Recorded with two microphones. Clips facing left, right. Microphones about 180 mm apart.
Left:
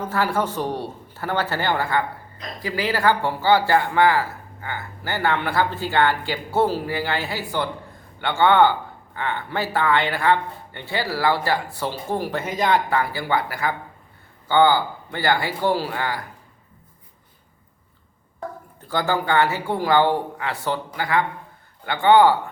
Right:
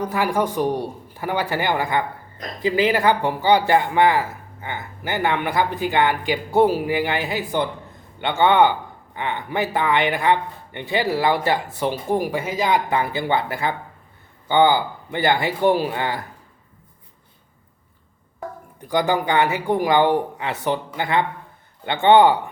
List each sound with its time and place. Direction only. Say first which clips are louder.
0.0 s speech: right 2 dB; 15° right (ahead or behind)
12.9 s speech: right 1 dB; 20° right (ahead or behind)
18.8 s speech: right 3 dB; 15° right (ahead or behind)